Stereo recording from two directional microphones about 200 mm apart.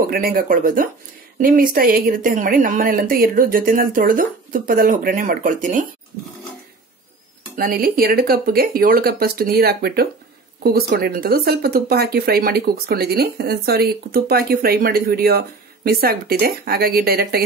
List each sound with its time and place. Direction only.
0.0 s speech: 45° right (ahead or behind)
7.5 s speech: 45° right (ahead or behind)